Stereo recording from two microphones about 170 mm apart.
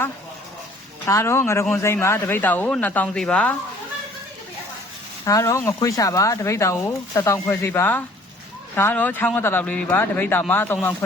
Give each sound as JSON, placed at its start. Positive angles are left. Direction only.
{"t": 1.0, "sound": "speech", "side_deg": 15}
{"t": 5.2, "sound": "speech", "side_deg": 20}